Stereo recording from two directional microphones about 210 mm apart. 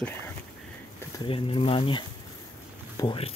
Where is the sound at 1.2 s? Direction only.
25° left (ahead or behind).